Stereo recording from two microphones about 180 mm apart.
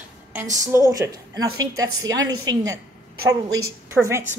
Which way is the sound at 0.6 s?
15° right (ahead or behind).